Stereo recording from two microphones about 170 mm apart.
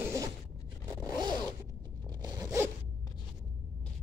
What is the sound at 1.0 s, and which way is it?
Zipper, 25° right (ahead or behind).